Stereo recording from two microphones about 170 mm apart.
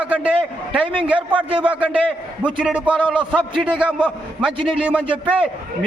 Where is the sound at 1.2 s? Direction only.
30° right (ahead or behind).